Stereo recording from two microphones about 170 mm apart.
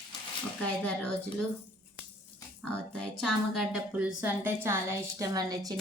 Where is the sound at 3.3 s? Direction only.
Centre (ahead or behind).